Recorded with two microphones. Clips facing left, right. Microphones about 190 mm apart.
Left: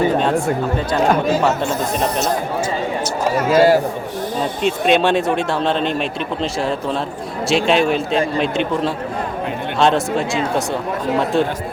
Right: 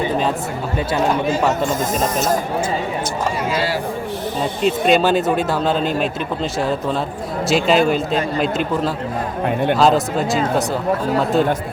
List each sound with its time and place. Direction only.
3.5 s a man's voice: 45° left (ahead or behind)
4.6 s speech: centre (ahead or behind)
9.7 s speech: centre (ahead or behind)